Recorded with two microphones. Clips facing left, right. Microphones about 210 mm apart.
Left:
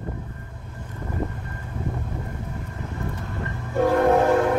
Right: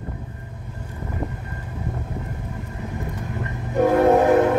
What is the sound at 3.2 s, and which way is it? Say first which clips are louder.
Train: right 2 dB; 15° right (ahead or behind).